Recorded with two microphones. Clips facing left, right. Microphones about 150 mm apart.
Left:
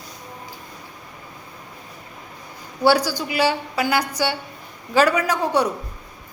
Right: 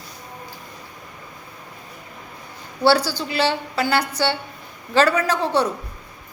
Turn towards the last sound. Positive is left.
turn(degrees=10)  # may be behind; listen again after turning